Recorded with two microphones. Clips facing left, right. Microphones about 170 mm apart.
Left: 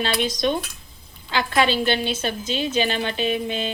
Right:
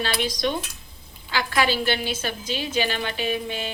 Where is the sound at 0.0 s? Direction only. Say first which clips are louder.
Left 3 dB; 25° left (ahead or behind).